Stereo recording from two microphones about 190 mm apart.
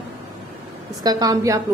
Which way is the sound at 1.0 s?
20° right (ahead or behind).